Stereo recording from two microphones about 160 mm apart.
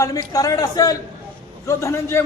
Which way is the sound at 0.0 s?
20° left (ahead or behind).